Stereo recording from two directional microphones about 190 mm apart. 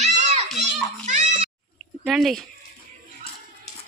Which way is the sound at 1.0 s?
40° right (ahead or behind).